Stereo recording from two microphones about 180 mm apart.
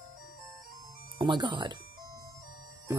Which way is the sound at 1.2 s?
25° right (ahead or behind).